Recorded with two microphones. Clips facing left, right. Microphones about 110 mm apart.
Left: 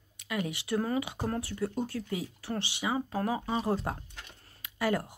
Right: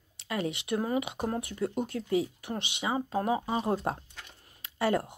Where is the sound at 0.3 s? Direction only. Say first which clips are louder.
Right 1 dB; 25° right (ahead or behind).